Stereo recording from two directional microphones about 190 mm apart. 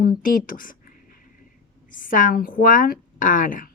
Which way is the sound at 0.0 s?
45° left (ahead or behind).